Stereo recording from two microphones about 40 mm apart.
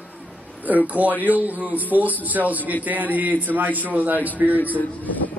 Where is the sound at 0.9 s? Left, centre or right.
Right.